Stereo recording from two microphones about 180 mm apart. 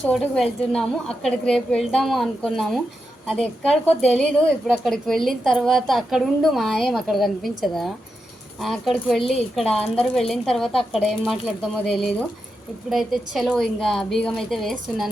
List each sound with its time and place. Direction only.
0.0 s a woman's voice: centre (ahead or behind)